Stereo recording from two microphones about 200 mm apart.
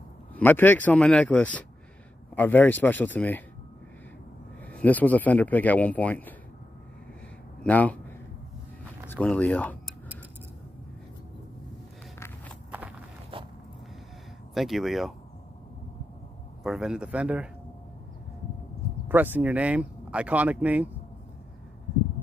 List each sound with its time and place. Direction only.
0.4 s speech: 10° left (ahead or behind)
4.7 s speech: 10° left (ahead or behind)
7.6 s speech: 5° left (ahead or behind)
9.1 s speech: 5° left (ahead or behind)
13.3 s a sound: 25° right (ahead or behind)
14.5 s speech: centre (ahead or behind)
16.6 s speech: centre (ahead or behind)
19.0 s speech: 10° right (ahead or behind)